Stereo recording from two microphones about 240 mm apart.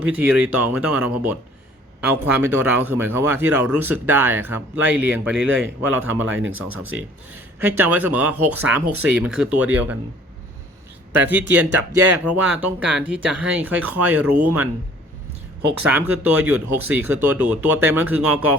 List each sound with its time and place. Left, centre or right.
0.0 s speech: centre
6.4 s speech: right
7.8 s speech: centre
11.2 s speech: centre
15.8 s speech: centre